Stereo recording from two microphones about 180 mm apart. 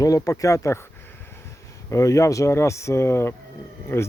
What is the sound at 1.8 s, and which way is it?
Speech, 15° left (ahead or behind).